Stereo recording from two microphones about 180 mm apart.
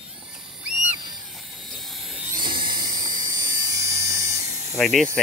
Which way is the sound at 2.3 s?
25° right (ahead or behind).